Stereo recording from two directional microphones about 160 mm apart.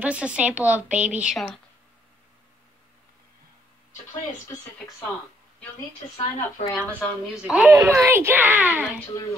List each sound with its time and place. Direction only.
0.0 s speech: 10° right (ahead or behind)
6.1 s a woman's voice: 20° left (ahead or behind)
7.4 s speech: 5° right (ahead or behind)
7.7 s speech: 20° right (ahead or behind)